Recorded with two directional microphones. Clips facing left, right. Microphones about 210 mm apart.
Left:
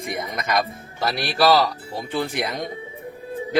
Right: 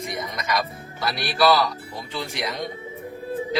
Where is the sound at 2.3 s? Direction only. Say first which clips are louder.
Left 3 dB; 55° left (ahead or behind).